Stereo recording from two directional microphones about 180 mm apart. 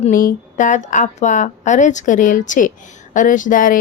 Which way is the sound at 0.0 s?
50° left (ahead or behind).